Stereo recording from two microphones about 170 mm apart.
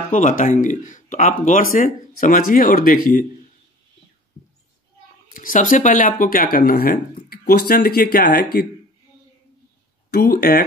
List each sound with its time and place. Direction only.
0.1 s speech: 50° left (ahead or behind)
5.3 s speech: 50° left (ahead or behind)
10.1 s speech: 60° left (ahead or behind)